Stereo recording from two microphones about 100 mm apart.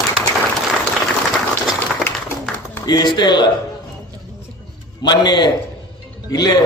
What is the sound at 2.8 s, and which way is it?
Speech, 45° left (ahead or behind).